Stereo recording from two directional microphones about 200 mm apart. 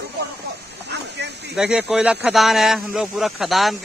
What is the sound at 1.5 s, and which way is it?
A man's voice, 5° right (ahead or behind).